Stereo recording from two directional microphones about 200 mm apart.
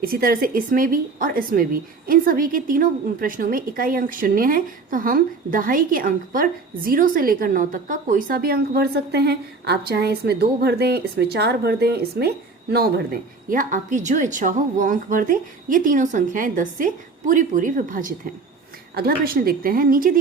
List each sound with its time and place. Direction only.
0.1 s a woman's voice: 45° right (ahead or behind)